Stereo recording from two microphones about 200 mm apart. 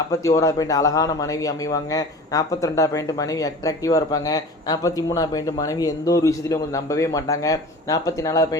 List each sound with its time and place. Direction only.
0.1 s a man's voice: 15° left (ahead or behind)